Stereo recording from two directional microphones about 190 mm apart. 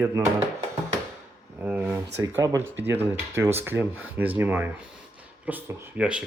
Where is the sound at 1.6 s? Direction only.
5° right (ahead or behind).